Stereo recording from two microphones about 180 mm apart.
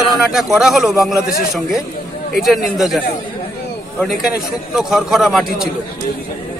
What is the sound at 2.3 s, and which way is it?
A man's voice, centre (ahead or behind).